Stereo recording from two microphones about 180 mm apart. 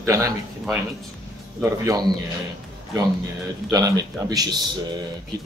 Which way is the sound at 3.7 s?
20° right (ahead or behind).